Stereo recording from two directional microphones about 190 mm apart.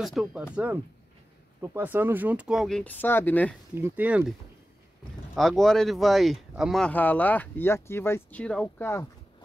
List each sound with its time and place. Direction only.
0.0 s speech: centre (ahead or behind)
1.6 s speech: 10° right (ahead or behind); by 3.5 s 10° left (ahead or behind)
3.7 s speech: 10° right (ahead or behind); by 9.0 s 10° left (ahead or behind)